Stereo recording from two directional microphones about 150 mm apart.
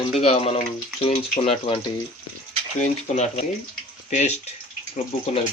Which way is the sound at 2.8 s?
50° left (ahead or behind).